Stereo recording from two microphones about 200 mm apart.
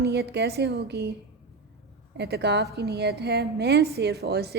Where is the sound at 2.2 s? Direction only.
55° right (ahead or behind).